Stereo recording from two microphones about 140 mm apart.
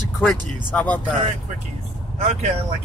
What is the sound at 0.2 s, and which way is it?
Speech, 10° left (ahead or behind).